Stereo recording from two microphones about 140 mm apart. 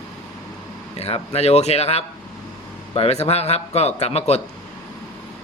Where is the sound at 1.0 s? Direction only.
45° left (ahead or behind).